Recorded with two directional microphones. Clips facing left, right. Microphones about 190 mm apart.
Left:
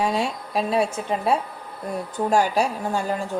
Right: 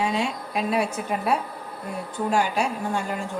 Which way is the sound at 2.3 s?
40° left (ahead or behind).